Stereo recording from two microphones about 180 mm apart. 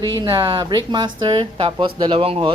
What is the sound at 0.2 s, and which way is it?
Speech, 25° right (ahead or behind).